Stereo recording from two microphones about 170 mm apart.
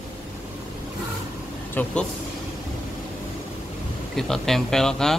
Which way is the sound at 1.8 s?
10° left (ahead or behind).